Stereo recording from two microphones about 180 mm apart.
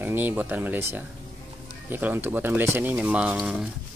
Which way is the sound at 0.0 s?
10° right (ahead or behind).